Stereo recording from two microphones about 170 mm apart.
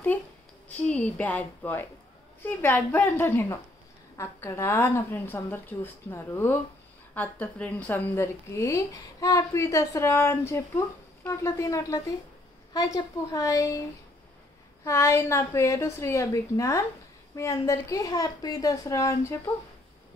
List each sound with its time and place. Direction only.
0.7 s a woman's voice: 10° left (ahead or behind)
14.9 s a woman's voice: 15° left (ahead or behind)